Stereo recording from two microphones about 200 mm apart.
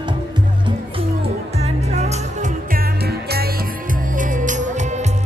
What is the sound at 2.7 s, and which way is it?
Music, 50° right (ahead or behind).